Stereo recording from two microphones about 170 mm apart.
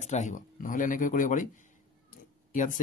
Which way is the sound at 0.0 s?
45° left (ahead or behind).